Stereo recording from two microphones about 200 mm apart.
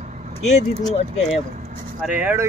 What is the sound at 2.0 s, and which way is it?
Speech, 5° right (ahead or behind).